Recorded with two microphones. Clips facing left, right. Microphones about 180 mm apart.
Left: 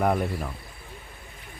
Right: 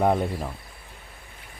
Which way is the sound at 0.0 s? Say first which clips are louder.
Right 2 dB; 25° right (ahead or behind).